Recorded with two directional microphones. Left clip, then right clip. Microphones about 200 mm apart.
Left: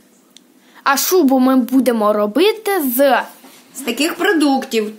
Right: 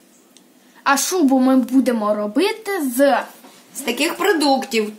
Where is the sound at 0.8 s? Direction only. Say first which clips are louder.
Left 3 dB; 30° left (ahead or behind).